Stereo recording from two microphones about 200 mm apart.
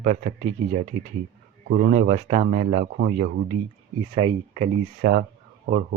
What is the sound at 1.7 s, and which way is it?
Speech, 45° right (ahead or behind).